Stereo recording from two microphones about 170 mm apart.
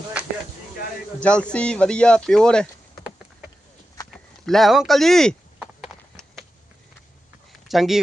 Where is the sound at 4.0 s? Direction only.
20° left (ahead or behind).